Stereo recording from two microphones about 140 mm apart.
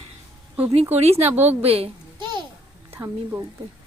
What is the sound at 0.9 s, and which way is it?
Speech, 50° right (ahead or behind).